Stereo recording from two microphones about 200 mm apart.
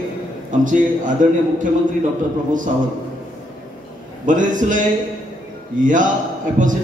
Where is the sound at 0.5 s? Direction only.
40° right (ahead or behind).